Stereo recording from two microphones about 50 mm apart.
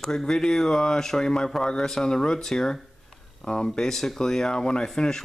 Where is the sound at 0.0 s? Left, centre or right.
Centre.